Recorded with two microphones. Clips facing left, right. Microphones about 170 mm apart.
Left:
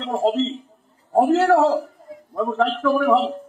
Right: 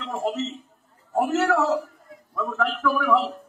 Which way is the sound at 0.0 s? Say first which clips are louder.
Left 7 dB; 30° left (ahead or behind).